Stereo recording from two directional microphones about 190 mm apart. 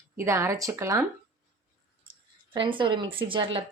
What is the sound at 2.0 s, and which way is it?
Speech, 30° right (ahead or behind).